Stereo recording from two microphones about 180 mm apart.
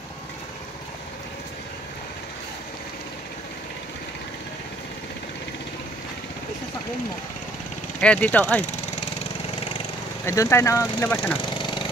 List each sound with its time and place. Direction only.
8.0 s speech: 5° left (ahead or behind)
10.2 s speech: 15° left (ahead or behind)
11.5 s lawn mower: 25° left (ahead or behind)